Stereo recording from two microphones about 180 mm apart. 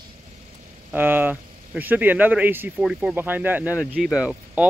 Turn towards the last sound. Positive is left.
turn(degrees=-5)  # may be behind; listen again after turning